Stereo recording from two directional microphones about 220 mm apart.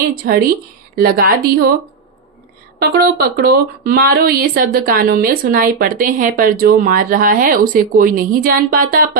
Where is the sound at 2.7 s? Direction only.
45° right (ahead or behind).